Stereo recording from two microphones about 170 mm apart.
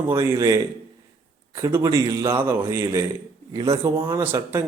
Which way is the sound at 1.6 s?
20° right (ahead or behind).